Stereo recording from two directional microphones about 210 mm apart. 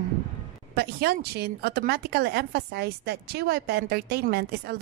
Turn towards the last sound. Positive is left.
turn(degrees=-50)  # may be behind; listen again after turning